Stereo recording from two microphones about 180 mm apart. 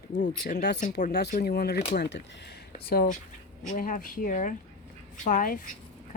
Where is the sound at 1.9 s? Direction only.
70° left (ahead or behind).